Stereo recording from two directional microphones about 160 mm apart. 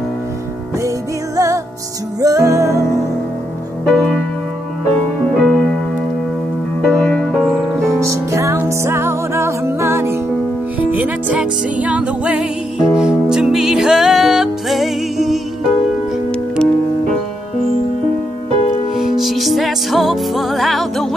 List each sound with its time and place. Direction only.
0.8 s music: 20° right (ahead or behind)
3.8 s music: 5° left (ahead or behind)
5.4 s music: 5° left (ahead or behind)
6.8 s music: 10° left (ahead or behind)
7.9 s music: 20° right (ahead or behind); by 15.4 s centre (ahead or behind)
18.9 s music: centre (ahead or behind)